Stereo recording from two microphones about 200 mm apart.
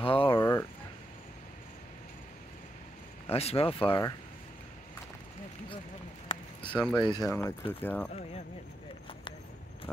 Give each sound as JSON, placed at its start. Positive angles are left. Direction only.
{"t": 0.0, "sound": "a sound", "side_deg": 25}
{"t": 0.4, "sound": "a sound", "side_deg": 15}
{"t": 3.3, "sound": "speech", "side_deg": 30}
{"t": 6.7, "sound": "speech", "side_deg": 5}
{"t": 7.0, "sound": "speech", "side_deg": 20}
{"t": 7.2, "sound": "speech", "side_deg": 10}